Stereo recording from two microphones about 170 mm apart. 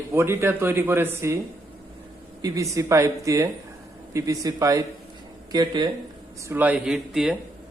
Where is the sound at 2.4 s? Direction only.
20° right (ahead or behind).